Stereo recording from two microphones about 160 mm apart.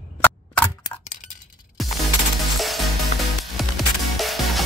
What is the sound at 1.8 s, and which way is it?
Music, centre (ahead or behind).